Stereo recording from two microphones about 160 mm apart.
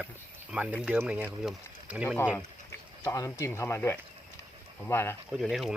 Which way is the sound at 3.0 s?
20° left (ahead or behind).